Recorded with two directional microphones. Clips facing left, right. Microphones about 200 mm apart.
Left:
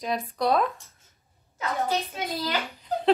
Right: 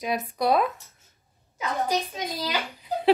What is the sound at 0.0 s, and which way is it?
Speech, 10° right (ahead or behind).